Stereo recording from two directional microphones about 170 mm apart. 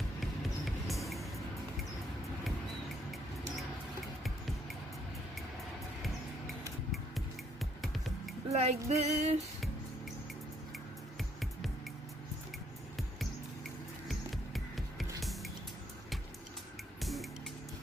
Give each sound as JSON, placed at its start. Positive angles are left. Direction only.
{"t": 0.7, "sound": "music", "side_deg": 0}
{"t": 8.5, "sound": "female singing", "side_deg": -40}
{"t": 14.0, "sound": "music", "side_deg": 0}
{"t": 17.0, "sound": "music", "side_deg": 0}